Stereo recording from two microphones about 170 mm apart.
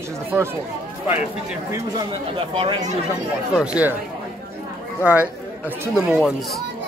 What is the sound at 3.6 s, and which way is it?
Speech, 10° right (ahead or behind).